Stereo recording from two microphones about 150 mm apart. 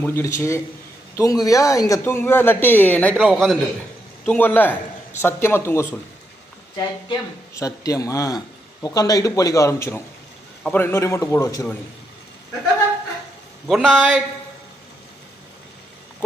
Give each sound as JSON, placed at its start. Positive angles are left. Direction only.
{"t": 0.0, "sound": "speech", "side_deg": 20}
{"t": 3.2, "sound": "a man's voice", "side_deg": 0}
{"t": 13.7, "sound": "a man's voice", "side_deg": 0}